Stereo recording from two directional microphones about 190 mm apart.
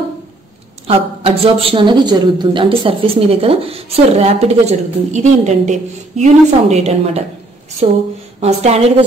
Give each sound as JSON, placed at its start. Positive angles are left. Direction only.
{"t": 0.8, "sound": "a woman's voice", "side_deg": -30}
{"t": 8.4, "sound": "a woman's voice", "side_deg": -35}